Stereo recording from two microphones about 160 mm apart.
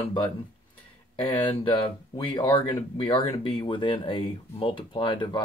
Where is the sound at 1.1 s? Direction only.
30° left (ahead or behind).